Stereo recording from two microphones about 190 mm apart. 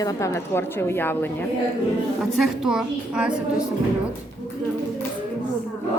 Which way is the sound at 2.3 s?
Centre (ahead or behind).